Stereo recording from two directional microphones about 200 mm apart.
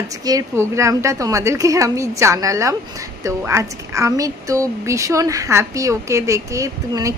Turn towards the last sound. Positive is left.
turn(degrees=-15)  # may be behind; listen again after turning